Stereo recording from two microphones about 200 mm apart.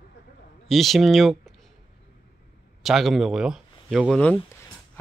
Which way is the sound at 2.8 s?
Centre (ahead or behind).